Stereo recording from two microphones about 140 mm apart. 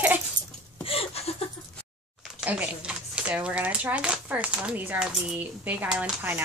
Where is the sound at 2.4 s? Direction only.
10° right (ahead or behind).